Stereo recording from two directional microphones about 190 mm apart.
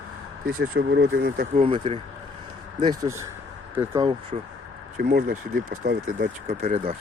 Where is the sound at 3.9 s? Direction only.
25° right (ahead or behind).